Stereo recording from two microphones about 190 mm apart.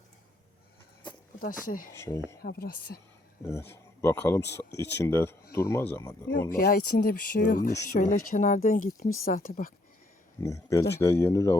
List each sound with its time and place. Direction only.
1.4 s speech: 45° left (ahead or behind)
2.0 s speech: 15° left (ahead or behind)
2.4 s speech: 50° left (ahead or behind)
3.4 s speech: 10° left (ahead or behind)
6.5 s speech: 50° left (ahead or behind)
10.4 s speech: 15° left (ahead or behind)